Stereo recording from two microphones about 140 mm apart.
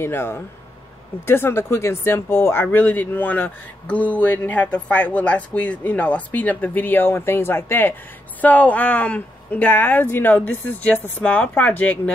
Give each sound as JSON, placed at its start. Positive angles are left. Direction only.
{"t": 0.0, "sound": "speech", "side_deg": 15}